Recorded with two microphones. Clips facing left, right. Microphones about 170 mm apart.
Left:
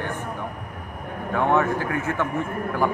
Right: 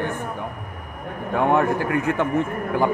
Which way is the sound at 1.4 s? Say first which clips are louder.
Right 2 dB; 15° right (ahead or behind).